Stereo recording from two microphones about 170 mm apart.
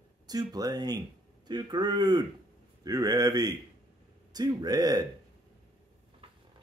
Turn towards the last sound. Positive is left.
turn(degrees=-25)  # may be behind; listen again after turning